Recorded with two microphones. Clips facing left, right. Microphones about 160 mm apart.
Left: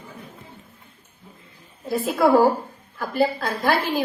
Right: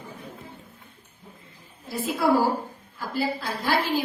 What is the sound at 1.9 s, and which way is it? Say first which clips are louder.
A woman's voice: left 5 dB; 50° left (ahead or behind).